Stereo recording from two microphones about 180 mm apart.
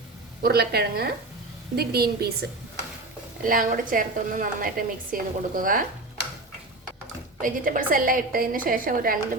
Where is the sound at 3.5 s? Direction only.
50° right (ahead or behind).